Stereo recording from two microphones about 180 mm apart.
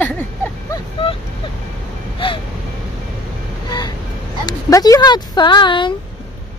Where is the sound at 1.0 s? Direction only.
30° left (ahead or behind).